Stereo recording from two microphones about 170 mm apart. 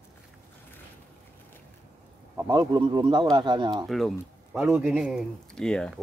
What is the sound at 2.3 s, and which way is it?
Speech, 20° right (ahead or behind).